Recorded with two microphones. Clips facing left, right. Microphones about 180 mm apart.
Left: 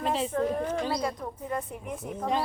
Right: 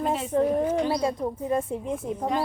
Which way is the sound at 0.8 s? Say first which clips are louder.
Right 5 dB; 25° right (ahead or behind).